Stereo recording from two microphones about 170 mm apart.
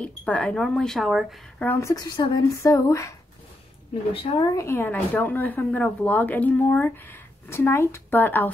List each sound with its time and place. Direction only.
0.0 s speech: 5° left (ahead or behind)
1.7 s a woman's voice: 15° left (ahead or behind)
4.1 s a woman's voice: 35° left (ahead or behind)
4.4 s speech: 20° left (ahead or behind)